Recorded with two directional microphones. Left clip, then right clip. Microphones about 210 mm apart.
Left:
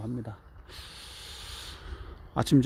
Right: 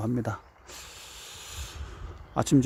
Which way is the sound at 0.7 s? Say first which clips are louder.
Even; 10° right (ahead or behind).